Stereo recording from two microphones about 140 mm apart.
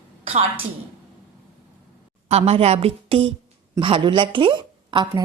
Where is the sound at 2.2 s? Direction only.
50° right (ahead or behind).